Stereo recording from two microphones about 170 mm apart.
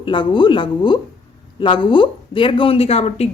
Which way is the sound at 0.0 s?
30° left (ahead or behind).